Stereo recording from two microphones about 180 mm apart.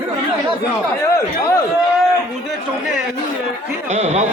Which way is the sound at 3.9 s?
40° right (ahead or behind).